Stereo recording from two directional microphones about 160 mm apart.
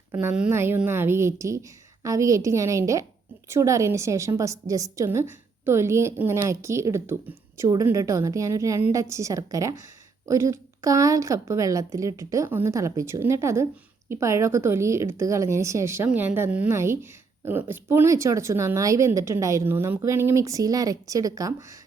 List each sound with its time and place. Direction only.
0.1 s a woman's voice: 15° right (ahead or behind)